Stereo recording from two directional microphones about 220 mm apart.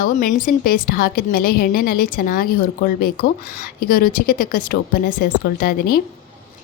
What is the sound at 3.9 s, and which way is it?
Speech, 40° left (ahead or behind).